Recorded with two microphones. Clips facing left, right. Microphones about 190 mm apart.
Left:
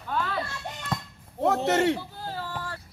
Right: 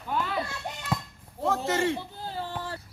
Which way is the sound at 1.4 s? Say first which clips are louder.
Left 4 dB; 70° left (ahead or behind).